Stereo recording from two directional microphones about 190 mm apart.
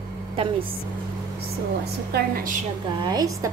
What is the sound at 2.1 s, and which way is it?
Speech, 50° right (ahead or behind).